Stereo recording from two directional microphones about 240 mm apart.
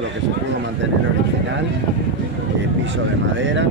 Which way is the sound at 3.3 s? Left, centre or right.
Right.